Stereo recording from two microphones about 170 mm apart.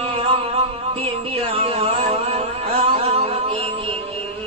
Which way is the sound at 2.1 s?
35° right (ahead or behind).